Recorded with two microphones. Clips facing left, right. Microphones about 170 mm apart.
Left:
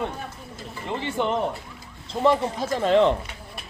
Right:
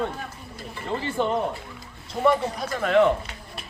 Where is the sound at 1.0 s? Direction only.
20° left (ahead or behind).